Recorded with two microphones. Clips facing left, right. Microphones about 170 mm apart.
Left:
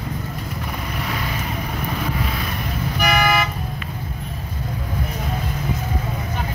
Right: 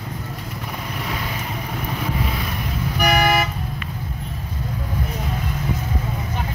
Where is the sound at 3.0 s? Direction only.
40° right (ahead or behind).